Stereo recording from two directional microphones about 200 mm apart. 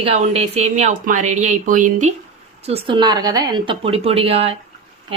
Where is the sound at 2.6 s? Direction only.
30° right (ahead or behind).